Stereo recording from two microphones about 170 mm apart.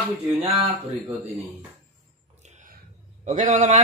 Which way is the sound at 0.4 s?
35° right (ahead or behind).